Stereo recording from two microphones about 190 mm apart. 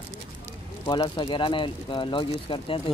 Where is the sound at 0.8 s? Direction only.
25° left (ahead or behind).